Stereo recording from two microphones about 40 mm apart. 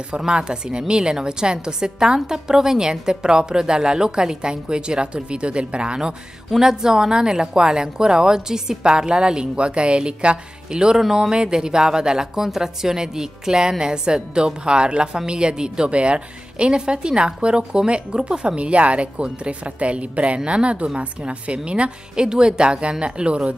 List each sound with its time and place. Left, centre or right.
0.2 s speech: right